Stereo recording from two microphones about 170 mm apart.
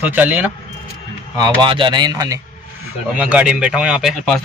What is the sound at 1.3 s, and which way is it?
Speech, 25° right (ahead or behind).